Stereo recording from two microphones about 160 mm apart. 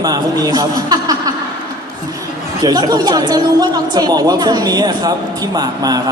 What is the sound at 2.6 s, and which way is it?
A man's voice, 25° right (ahead or behind).